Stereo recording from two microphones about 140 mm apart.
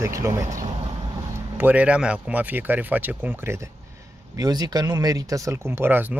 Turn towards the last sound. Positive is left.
turn(degrees=-15)  # may be behind; listen again after turning